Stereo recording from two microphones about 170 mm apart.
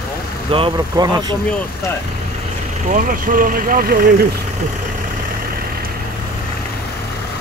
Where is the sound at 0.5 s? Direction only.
30° right (ahead or behind).